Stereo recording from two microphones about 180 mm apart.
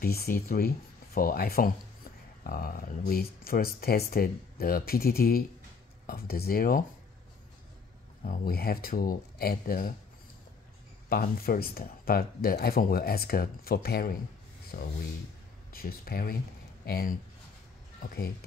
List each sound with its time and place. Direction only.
0.0 s speech: 55° left (ahead or behind)
8.2 s speech: 55° left (ahead or behind)
11.1 s speech: 55° left (ahead or behind)